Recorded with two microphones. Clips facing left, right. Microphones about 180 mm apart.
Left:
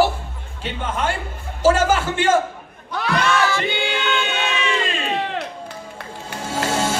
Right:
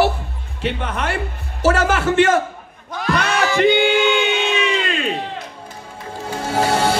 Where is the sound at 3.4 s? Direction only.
15° right (ahead or behind).